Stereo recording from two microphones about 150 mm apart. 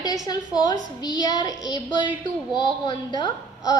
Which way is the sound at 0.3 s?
25° left (ahead or behind).